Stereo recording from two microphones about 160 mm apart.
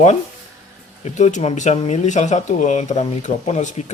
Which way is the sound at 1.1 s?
45° left (ahead or behind).